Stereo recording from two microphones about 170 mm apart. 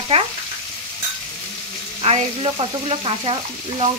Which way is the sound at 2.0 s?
35° right (ahead or behind).